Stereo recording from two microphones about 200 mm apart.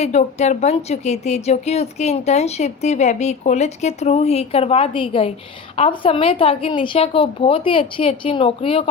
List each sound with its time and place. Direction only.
0.0 s a woman's voice: 35° left (ahead or behind)